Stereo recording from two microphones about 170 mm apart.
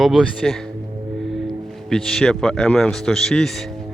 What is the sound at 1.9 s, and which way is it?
A man's voice, 5° left (ahead or behind).